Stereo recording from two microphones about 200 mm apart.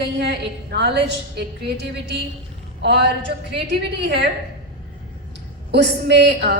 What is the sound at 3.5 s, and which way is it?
Speech, 60° right (ahead or behind).